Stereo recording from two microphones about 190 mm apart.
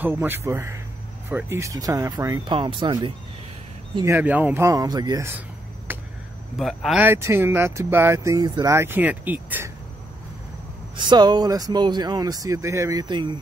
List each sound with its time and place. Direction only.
0.0 s speech: 10° right (ahead or behind)
5.9 s a sound: 10° right (ahead or behind)
6.6 s speech: centre (ahead or behind)
11.0 s speech: 20° right (ahead or behind)